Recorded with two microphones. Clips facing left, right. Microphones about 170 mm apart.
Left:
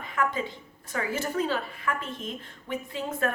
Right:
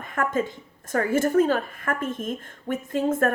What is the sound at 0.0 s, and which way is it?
A woman's voice, 50° right (ahead or behind).